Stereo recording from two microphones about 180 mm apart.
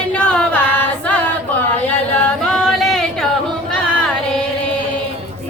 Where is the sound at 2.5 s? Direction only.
5° left (ahead or behind).